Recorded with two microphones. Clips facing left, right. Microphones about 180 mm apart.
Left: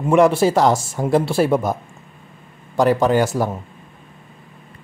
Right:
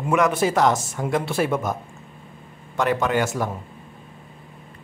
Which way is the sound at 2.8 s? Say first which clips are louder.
Left 6 dB; 35° left (ahead or behind).